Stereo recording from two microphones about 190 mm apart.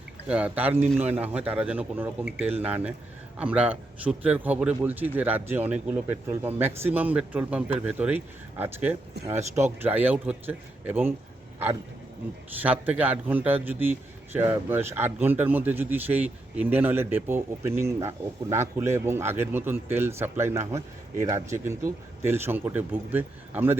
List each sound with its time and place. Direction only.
0.3 s speech: 5° right (ahead or behind)
12.5 s speech: 10° right (ahead or behind)